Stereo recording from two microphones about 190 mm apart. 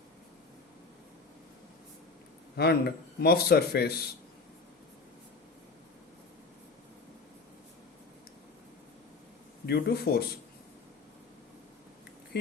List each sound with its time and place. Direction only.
2.6 s a man's voice: 55° left (ahead or behind)
9.6 s a man's voice: 60° left (ahead or behind)